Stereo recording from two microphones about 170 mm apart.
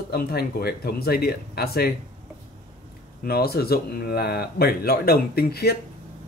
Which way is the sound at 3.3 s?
65° left (ahead or behind).